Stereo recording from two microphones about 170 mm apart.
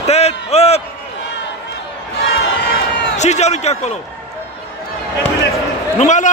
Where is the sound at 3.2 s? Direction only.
40° left (ahead or behind).